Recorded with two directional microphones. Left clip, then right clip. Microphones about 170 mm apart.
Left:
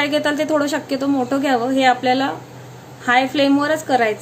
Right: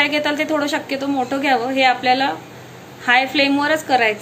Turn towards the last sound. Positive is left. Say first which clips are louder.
# right 1 dB
turn(degrees=35)  # may be behind; listen again after turning